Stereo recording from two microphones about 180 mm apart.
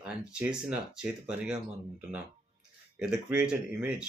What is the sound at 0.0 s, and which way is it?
Speech, 5° right (ahead or behind).